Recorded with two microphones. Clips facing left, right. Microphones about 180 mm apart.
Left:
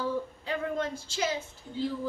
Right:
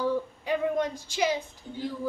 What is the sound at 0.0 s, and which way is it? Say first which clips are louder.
Speech: right 4 dB; 15° right (ahead or behind).